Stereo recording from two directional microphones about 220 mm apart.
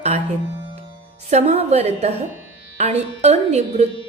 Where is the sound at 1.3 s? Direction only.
30° right (ahead or behind).